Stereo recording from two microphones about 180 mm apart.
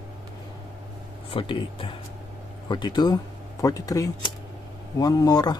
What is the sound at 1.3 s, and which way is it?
Speech, 30° left (ahead or behind).